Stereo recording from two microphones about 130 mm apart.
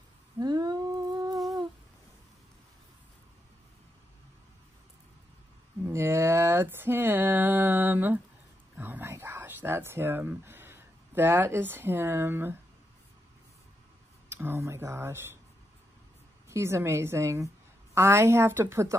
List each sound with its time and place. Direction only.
0.4 s humming: 30° right (ahead or behind)
5.9 s a sound: 20° right (ahead or behind)
14.3 s speech: 20° right (ahead or behind)
16.4 s speech: 20° right (ahead or behind)